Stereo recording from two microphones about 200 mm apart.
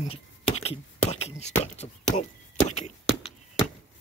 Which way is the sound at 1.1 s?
35° left (ahead or behind).